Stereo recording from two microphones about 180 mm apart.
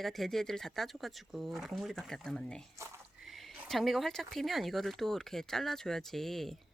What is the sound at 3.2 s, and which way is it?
Speech, centre (ahead or behind).